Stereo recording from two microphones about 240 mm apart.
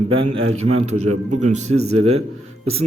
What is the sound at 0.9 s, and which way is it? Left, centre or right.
Speech, right.